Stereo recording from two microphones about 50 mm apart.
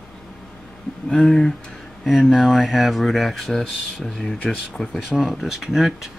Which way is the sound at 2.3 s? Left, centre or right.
Centre.